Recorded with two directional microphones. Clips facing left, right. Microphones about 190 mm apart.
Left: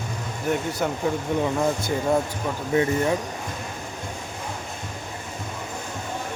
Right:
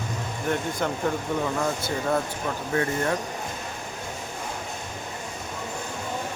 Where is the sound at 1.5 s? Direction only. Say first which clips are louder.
Left 3 dB; 15° left (ahead or behind).